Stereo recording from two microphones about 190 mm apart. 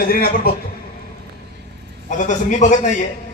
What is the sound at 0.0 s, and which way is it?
Speech, 50° left (ahead or behind).